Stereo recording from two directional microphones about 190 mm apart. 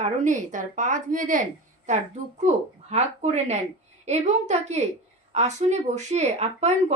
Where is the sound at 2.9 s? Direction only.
35° right (ahead or behind).